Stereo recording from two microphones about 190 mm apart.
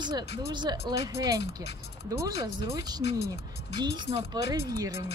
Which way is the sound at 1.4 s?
60° left (ahead or behind).